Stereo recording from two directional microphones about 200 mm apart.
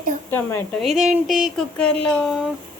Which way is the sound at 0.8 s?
Centre (ahead or behind).